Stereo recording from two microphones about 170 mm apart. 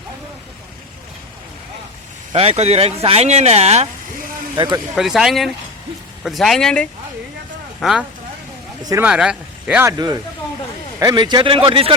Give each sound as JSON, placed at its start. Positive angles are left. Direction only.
{"t": 2.3, "sound": "speech", "side_deg": -35}
{"t": 4.5, "sound": "a man's voice", "side_deg": -25}
{"t": 4.9, "sound": "speech", "side_deg": -5}
{"t": 8.8, "sound": "speech", "side_deg": -20}
{"t": 9.0, "sound": "speech", "side_deg": -5}
{"t": 11.0, "sound": "a man's voice", "side_deg": -25}